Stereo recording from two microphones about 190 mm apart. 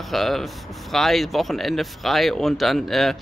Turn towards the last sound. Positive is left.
turn(degrees=0)  # may be behind; listen again after turning